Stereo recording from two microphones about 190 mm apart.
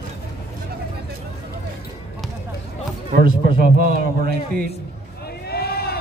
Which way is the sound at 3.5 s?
50° right (ahead or behind).